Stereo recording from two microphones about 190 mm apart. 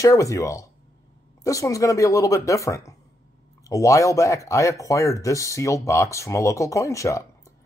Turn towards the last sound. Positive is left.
turn(degrees=15)  # may be behind; listen again after turning